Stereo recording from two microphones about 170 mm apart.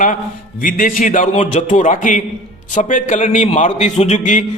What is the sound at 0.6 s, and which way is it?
A man's voice, 55° left (ahead or behind).